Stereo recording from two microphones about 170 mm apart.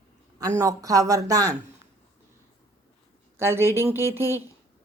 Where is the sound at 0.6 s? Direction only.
20° right (ahead or behind).